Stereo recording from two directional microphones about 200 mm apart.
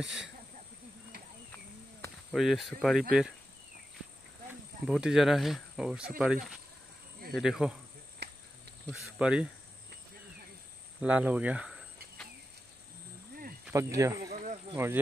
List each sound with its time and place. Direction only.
0.0 s speech: centre (ahead or behind)
2.3 s speech: centre (ahead or behind)
4.5 s speech: 5° right (ahead or behind)
8.2 s insect: 55° right (ahead or behind)
9.2 s speech: 5° right (ahead or behind)
11.0 s cricket: 5° right (ahead or behind)
13.7 s speech: 15° right (ahead or behind)